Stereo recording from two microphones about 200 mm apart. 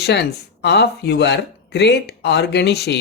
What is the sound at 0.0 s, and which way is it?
Speech, 55° left (ahead or behind).